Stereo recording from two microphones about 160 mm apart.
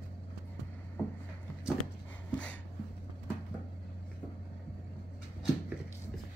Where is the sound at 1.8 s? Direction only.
10° left (ahead or behind).